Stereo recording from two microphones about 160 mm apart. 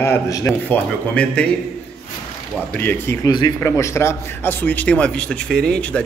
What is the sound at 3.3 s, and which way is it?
Speech, 30° left (ahead or behind).